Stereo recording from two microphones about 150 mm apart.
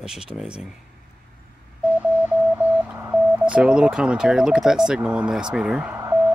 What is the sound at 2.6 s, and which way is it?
Speech, 10° right (ahead or behind).